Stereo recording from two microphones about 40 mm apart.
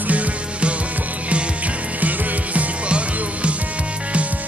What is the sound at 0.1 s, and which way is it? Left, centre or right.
Music, right.